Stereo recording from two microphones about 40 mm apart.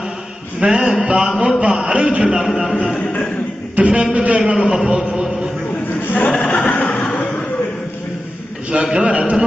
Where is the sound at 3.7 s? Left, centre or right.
Right.